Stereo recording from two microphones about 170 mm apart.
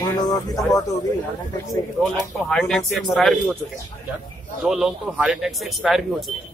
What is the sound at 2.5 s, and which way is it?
Speech, 5° left (ahead or behind).